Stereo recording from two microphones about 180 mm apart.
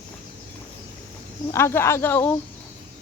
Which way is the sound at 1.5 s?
15° left (ahead or behind).